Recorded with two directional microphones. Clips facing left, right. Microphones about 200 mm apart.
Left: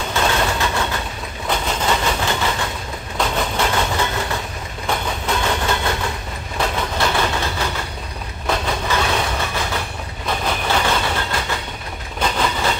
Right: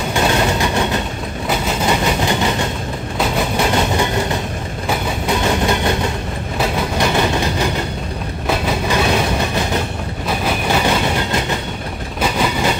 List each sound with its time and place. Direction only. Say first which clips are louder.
0.1 s a sound: right 4 dB; 15° right (ahead or behind)
1.5 s vehicle: right 2 dB; 10° right (ahead or behind)
3.2 s train: right 3 dB; 10° right (ahead or behind)
4.8 s vehicle: right 3 dB; 15° right (ahead or behind)
6.6 s train: right 3 dB; 15° right (ahead or behind)